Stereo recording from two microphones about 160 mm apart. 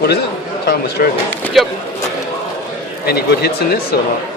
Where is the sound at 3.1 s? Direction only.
85° left.